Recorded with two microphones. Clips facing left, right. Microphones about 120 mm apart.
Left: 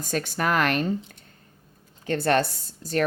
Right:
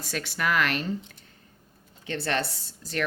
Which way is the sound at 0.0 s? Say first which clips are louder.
Left 4 dB; 40° left (ahead or behind).